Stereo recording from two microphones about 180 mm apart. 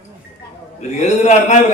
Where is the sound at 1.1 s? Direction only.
40° left (ahead or behind).